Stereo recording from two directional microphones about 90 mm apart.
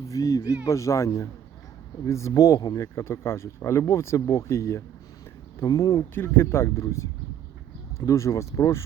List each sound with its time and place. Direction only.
0.1 s speech: 40° left (ahead or behind)
5.6 s speech: 45° left (ahead or behind)
6.1 s speech: 25° left (ahead or behind)